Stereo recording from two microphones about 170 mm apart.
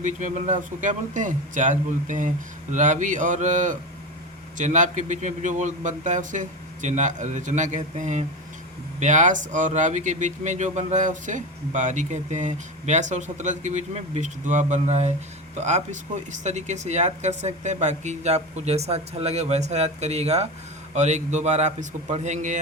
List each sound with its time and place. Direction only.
0.0 s speech: 45° right (ahead or behind)